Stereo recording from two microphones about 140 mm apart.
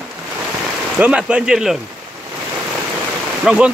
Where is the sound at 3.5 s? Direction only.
10° right (ahead or behind).